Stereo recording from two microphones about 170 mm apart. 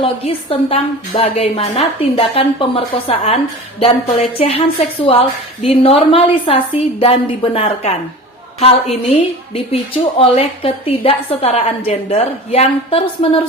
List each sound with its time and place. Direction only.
0.0 s a woman's voice: 35° left (ahead or behind)
10.2 s a woman's voice: 35° left (ahead or behind)